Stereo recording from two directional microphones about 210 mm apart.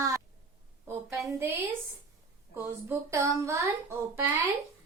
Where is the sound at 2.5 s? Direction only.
10° right (ahead or behind).